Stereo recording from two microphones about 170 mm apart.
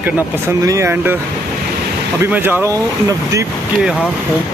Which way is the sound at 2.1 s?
15° right (ahead or behind).